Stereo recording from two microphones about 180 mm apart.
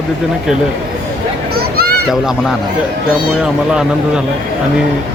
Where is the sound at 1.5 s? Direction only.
60° right (ahead or behind).